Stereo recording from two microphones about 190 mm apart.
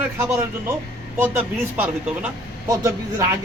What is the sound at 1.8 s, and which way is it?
Speech, 5° right (ahead or behind).